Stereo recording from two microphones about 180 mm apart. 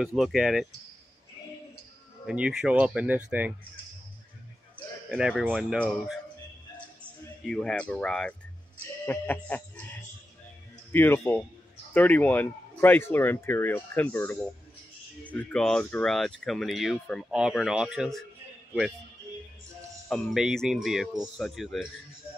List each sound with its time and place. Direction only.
0.0 s speech: centre (ahead or behind)
2.2 s speech: 5° right (ahead or behind)
5.1 s speech: 5° right (ahead or behind)
7.4 s speech: 5° left (ahead or behind)
9.0 s a sound: 10° left (ahead or behind)
10.9 s speech: 10° left (ahead or behind)
20.1 s speech: centre (ahead or behind)